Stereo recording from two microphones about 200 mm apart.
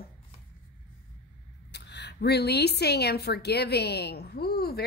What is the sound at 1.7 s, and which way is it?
A woman's voice, 55° left (ahead or behind).